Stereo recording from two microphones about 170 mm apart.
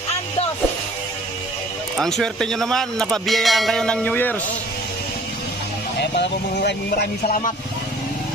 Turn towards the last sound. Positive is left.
turn(degrees=65)  # may be behind; listen again after turning